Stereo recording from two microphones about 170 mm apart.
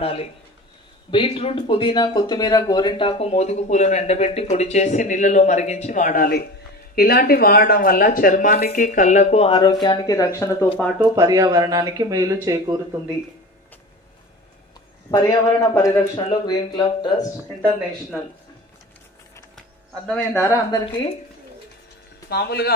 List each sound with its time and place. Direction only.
0.0 s speech: 35° left (ahead or behind); by 10.7 s 15° left (ahead or behind)
11.0 s speech: 20° right (ahead or behind)
15.0 s speech: 20° left (ahead or behind)
20.3 s speech: 15° left (ahead or behind)
22.3 s speech: 70° left (ahead or behind)